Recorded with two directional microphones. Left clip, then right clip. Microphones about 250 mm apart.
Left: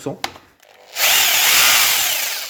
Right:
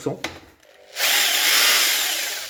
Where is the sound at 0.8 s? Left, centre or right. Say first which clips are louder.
Left 4 dB; left.